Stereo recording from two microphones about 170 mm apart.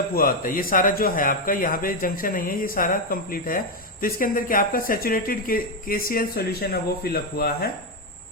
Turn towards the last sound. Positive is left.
turn(degrees=65)  # may be behind; listen again after turning